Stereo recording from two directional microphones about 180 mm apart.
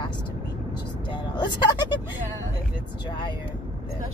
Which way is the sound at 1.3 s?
25° left (ahead or behind).